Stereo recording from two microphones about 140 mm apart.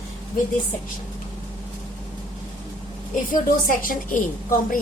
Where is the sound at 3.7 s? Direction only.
75° left (ahead or behind).